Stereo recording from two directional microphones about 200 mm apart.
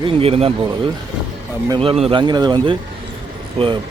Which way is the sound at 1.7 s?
30° right (ahead or behind).